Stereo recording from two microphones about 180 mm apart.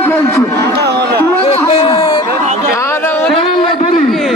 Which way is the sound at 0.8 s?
65° right (ahead or behind).